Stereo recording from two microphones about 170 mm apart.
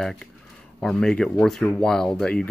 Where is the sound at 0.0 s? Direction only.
5° left (ahead or behind).